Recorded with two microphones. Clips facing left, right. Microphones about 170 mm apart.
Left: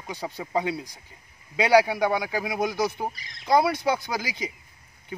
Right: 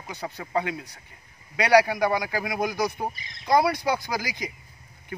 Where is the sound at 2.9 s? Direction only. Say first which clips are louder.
Even; 10° right (ahead or behind).